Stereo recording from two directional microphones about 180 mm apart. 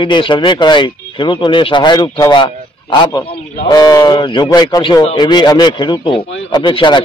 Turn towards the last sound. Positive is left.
turn(degrees=25)  # may be behind; listen again after turning